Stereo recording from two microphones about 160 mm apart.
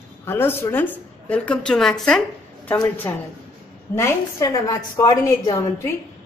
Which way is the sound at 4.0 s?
20° left (ahead or behind).